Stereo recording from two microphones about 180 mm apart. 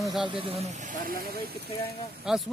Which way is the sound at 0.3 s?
30° right (ahead or behind).